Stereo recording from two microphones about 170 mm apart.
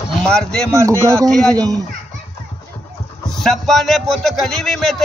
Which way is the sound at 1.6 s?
20° right (ahead or behind).